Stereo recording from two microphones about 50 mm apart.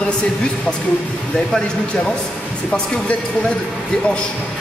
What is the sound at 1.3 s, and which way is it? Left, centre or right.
Speech, centre.